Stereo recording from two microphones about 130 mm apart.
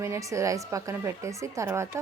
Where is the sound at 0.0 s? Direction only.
25° right (ahead or behind).